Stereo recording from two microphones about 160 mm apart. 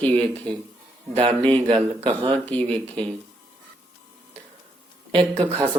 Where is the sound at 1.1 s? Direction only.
30° right (ahead or behind).